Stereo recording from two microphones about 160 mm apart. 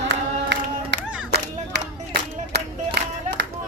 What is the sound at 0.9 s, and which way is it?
Clapping, 90° right.